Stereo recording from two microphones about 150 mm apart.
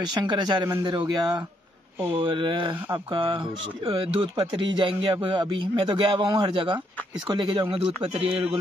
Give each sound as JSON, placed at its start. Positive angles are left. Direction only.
{"t": 0.1, "sound": "speech", "side_deg": -30}